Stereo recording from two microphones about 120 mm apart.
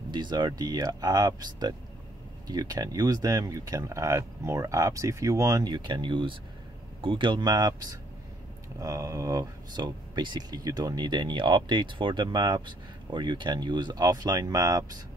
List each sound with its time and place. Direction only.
0.1 s speech: 40° right (ahead or behind)